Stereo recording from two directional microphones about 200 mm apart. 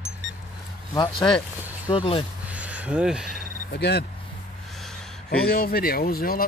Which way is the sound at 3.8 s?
55° left (ahead or behind).